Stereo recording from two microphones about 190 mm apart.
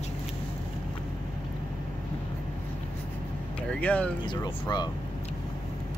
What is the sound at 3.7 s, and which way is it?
Speech, 5° left (ahead or behind).